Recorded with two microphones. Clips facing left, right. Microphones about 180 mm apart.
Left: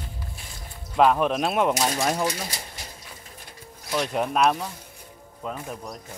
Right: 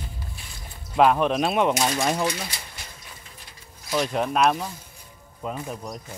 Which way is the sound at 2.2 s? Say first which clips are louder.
Even; 40° left (ahead or behind).